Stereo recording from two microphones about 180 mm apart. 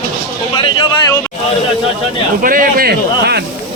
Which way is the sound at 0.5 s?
25° left (ahead or behind).